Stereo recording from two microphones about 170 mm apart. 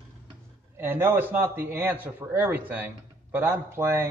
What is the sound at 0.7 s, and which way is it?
A man's voice, 15° right (ahead or behind).